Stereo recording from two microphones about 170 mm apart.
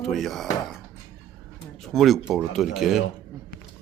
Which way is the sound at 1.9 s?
Centre (ahead or behind).